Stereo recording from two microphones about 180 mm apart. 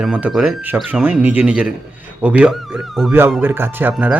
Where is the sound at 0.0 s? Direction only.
5° right (ahead or behind).